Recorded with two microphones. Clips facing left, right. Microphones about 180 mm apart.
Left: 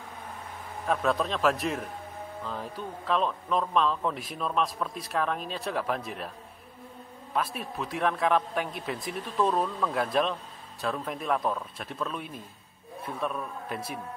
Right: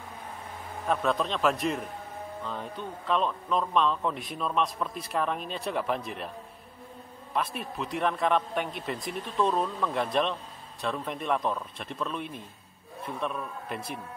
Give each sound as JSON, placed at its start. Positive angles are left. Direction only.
{"t": 0.8, "sound": "a man's voice", "side_deg": 0}
{"t": 7.3, "sound": "a man's voice", "side_deg": 0}